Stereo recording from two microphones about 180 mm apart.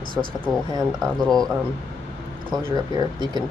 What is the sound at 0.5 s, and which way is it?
Speech, centre (ahead or behind).